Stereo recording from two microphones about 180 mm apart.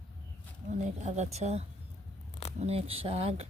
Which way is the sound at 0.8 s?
40° right (ahead or behind).